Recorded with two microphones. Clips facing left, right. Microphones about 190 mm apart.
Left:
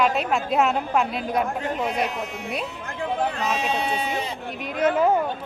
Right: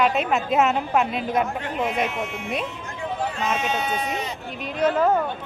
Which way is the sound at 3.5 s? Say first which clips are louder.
Even; 35° left (ahead or behind).